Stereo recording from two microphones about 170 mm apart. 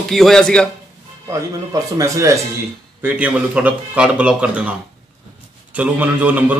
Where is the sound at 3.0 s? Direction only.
10° right (ahead or behind).